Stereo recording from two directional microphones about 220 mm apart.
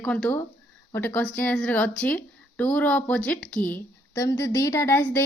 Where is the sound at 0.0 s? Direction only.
5° left (ahead or behind).